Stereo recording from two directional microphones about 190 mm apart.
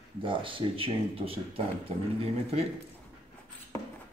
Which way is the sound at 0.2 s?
25° right (ahead or behind).